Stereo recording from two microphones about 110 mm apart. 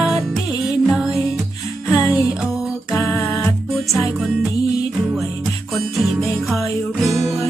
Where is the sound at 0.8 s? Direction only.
5° right (ahead or behind).